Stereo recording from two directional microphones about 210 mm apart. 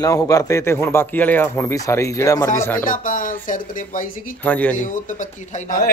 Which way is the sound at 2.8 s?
40° left (ahead or behind).